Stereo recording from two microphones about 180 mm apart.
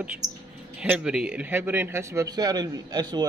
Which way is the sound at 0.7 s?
5° right (ahead or behind).